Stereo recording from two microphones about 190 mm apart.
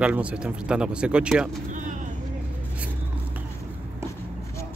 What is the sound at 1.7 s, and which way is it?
Vehicle, 40° right (ahead or behind).